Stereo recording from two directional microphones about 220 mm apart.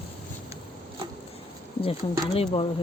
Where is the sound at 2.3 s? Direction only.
25° left (ahead or behind).